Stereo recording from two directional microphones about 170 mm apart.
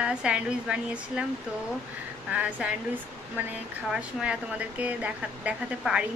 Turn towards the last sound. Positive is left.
turn(degrees=-5)  # may be behind; listen again after turning